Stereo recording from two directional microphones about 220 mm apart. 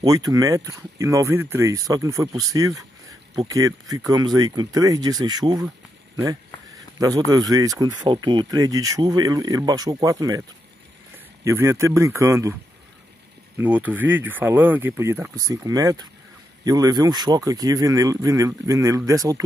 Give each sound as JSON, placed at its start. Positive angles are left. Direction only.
{"t": 0.0, "sound": "speech", "side_deg": -15}
{"t": 7.0, "sound": "speech", "side_deg": -15}
{"t": 11.4, "sound": "speech", "side_deg": -10}
{"t": 13.6, "sound": "speech", "side_deg": -5}